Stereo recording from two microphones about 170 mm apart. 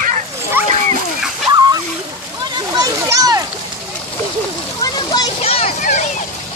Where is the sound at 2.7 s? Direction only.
20° right (ahead or behind).